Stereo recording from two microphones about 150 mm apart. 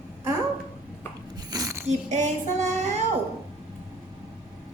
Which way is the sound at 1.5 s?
20° right (ahead or behind).